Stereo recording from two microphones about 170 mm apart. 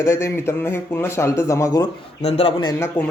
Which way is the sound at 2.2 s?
35° left (ahead or behind).